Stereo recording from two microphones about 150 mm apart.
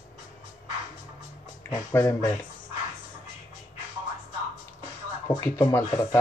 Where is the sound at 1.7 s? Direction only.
20° left (ahead or behind).